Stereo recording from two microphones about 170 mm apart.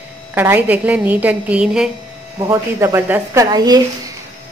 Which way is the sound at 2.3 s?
20° right (ahead or behind).